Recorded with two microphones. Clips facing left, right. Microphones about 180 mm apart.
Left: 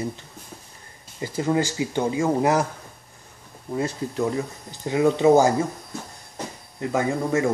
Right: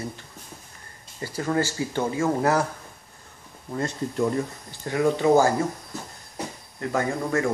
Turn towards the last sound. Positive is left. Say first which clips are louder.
# left 2 dB
turn(degrees=15)  # may be behind; listen again after turning